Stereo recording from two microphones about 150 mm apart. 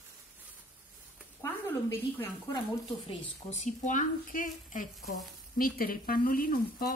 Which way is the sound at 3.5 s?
50° left (ahead or behind).